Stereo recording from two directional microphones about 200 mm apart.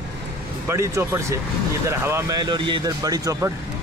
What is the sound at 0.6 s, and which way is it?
Speech, 15° right (ahead or behind).